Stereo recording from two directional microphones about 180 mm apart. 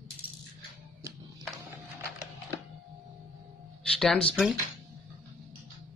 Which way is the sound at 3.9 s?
5° left (ahead or behind).